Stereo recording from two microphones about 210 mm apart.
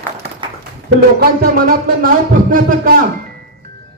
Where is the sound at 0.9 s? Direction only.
45° right (ahead or behind).